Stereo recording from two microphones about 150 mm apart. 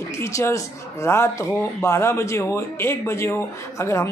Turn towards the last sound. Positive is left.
turn(degrees=15)  # may be behind; listen again after turning